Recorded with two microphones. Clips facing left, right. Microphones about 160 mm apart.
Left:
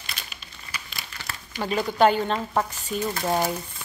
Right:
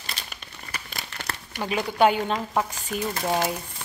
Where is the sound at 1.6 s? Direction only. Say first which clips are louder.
Left 1 dB; 10° right (ahead or behind).